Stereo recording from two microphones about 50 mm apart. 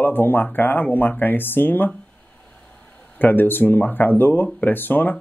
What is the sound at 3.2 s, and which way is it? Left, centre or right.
Speech, left.